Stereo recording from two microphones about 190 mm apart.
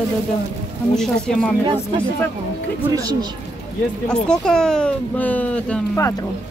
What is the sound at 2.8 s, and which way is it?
Speech, 20° right (ahead or behind).